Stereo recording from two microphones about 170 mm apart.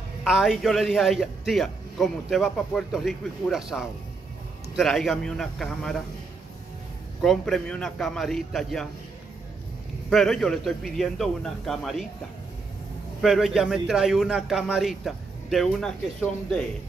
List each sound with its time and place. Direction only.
0.2 s a man's voice: centre (ahead or behind)
7.2 s a man's voice: centre (ahead or behind)
10.0 s a man's voice: centre (ahead or behind)
13.2 s a man's voice: centre (ahead or behind)